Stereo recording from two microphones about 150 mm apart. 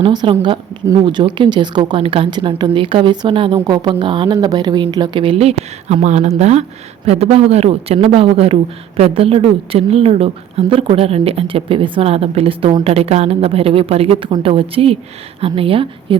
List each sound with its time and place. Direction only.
0.0 s speech: 30° right (ahead or behind)